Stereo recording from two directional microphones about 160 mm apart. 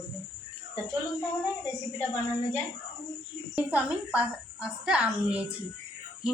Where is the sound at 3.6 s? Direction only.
10° right (ahead or behind).